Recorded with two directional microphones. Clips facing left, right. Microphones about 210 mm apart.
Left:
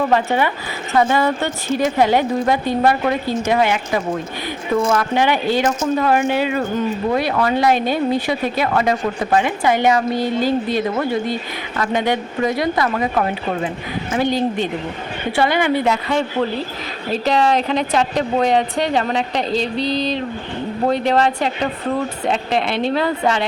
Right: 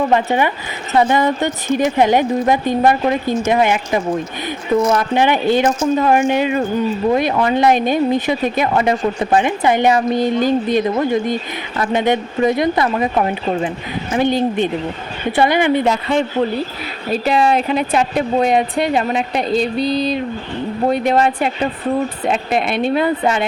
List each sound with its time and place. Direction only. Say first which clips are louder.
0.1 s a woman's voice: right 2 dB; 15° right (ahead or behind)
14.3 s speech: right 4 dB; 50° right (ahead or behind)
15.4 s a woman's voice: right 3 dB; 20° right (ahead or behind)